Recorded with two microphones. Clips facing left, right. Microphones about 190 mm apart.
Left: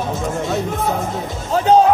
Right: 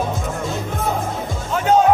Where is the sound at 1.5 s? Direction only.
35° left (ahead or behind).